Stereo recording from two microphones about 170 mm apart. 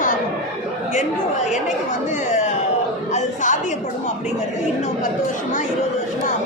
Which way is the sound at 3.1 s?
45° left (ahead or behind).